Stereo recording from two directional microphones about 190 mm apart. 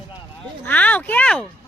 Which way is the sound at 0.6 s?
10° left (ahead or behind).